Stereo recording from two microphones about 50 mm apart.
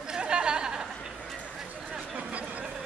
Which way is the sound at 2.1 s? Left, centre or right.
Right.